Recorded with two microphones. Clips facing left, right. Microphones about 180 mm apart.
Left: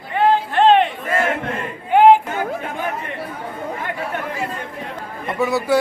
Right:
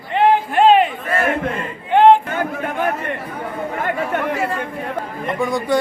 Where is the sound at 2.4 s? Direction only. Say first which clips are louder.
Right 3 dB; 55° right (ahead or behind).